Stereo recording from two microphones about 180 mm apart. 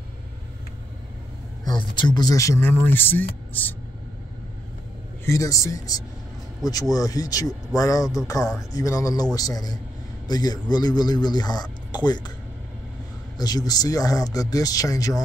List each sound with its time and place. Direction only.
1.6 s speech: 25° left (ahead or behind)
5.2 s a man's voice: 15° left (ahead or behind)
13.4 s a man's voice: 20° left (ahead or behind)